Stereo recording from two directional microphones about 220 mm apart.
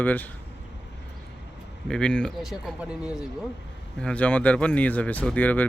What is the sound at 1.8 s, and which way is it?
Speech, 5° left (ahead or behind).